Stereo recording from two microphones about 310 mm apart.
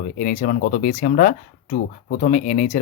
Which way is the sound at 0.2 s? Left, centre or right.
Left.